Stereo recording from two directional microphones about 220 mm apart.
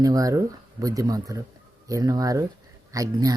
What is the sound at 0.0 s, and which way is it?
Speech, 15° right (ahead or behind).